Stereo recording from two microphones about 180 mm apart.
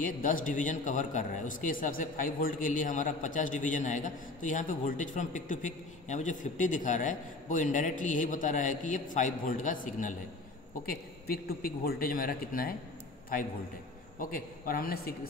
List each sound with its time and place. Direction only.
0.0 s a man's voice: 45° left (ahead or behind)
10.9 s a man's voice: 55° left (ahead or behind)
14.2 s a man's voice: 55° left (ahead or behind)